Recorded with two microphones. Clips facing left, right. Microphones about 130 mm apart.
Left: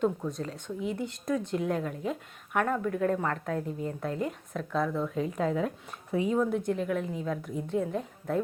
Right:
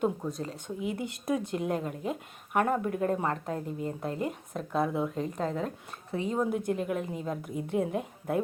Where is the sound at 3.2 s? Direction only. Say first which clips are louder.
Even; 25° right (ahead or behind).